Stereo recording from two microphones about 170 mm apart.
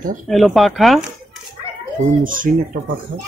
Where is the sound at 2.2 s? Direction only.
55° right (ahead or behind).